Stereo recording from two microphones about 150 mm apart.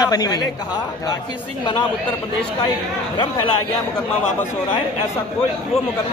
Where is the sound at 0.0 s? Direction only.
25° left (ahead or behind).